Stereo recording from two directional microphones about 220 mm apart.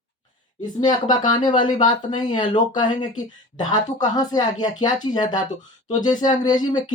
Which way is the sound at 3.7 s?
15° left (ahead or behind).